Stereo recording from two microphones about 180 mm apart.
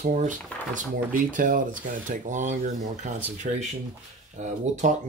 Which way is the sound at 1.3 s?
50° right (ahead or behind).